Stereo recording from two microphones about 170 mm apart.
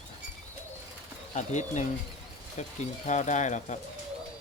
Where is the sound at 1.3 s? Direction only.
45° left (ahead or behind).